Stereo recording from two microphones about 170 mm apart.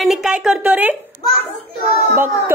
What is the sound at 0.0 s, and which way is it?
Speech, centre (ahead or behind).